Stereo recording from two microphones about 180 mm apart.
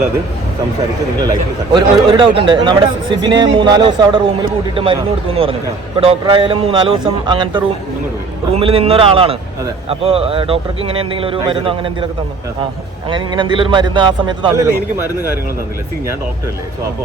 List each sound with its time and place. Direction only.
1.2 s a man's voice: 25° right (ahead or behind)
13.1 s speech: 25° right (ahead or behind)